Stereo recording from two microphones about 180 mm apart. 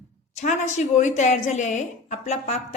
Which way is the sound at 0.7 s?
40° left (ahead or behind).